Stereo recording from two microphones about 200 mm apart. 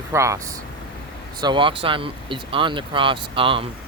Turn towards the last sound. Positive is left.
turn(degrees=-25)  # may be behind; listen again after turning